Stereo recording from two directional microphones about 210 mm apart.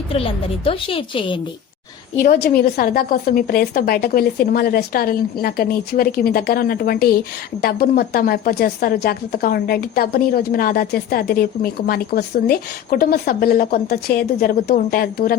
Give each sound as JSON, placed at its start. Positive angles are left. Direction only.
{"t": 0.1, "sound": "a woman's voice", "side_deg": 25}
{"t": 2.2, "sound": "a woman's voice", "side_deg": 45}